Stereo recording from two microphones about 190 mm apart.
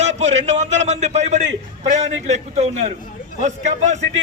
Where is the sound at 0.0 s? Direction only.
35° right (ahead or behind).